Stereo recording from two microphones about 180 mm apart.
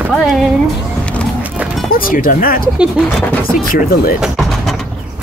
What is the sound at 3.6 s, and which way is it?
Speech, 50° left (ahead or behind).